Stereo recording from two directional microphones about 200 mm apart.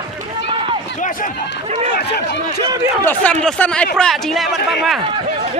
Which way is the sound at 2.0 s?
55° left (ahead or behind).